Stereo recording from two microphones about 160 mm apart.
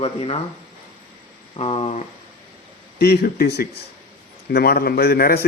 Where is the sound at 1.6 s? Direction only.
40° left (ahead or behind).